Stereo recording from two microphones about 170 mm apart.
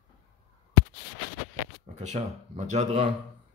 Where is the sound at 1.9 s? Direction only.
45° right (ahead or behind).